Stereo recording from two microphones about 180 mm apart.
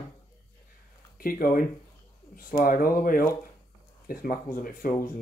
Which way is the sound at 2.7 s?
50° left (ahead or behind).